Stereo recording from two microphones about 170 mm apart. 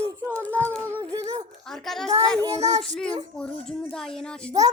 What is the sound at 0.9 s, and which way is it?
Speech, 20° right (ahead or behind).